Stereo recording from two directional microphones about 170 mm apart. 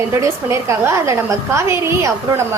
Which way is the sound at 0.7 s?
15° right (ahead or behind).